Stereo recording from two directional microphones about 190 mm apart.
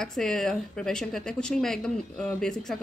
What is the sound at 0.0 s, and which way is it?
Speech, centre (ahead or behind).